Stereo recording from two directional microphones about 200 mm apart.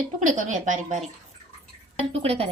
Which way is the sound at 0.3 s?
40° right (ahead or behind).